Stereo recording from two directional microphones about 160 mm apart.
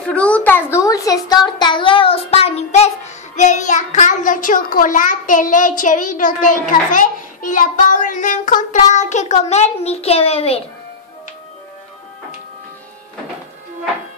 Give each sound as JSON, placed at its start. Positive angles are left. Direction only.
{"t": 0.0, "sound": "a child's voice", "side_deg": 5}